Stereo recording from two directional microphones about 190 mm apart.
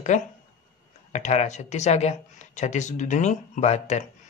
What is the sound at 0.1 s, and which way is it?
Speech, 40° left (ahead or behind).